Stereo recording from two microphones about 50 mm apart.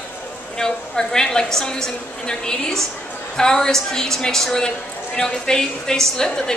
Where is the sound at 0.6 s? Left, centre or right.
Centre.